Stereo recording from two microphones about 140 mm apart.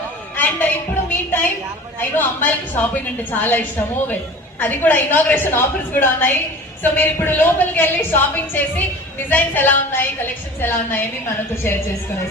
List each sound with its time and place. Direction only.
0.3 s a sound: 15° left (ahead or behind)
2.0 s a woman's voice: 15° left (ahead or behind)
4.6 s a woman's voice: 15° left (ahead or behind)